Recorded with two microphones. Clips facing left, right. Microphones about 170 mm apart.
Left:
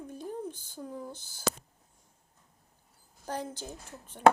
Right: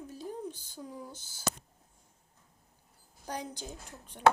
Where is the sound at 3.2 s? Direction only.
15° right (ahead or behind).